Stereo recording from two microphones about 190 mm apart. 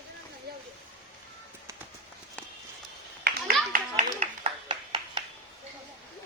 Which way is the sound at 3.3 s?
50° right (ahead or behind).